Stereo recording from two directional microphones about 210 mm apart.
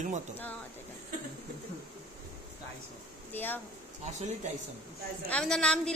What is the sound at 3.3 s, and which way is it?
Speech, 10° left (ahead or behind).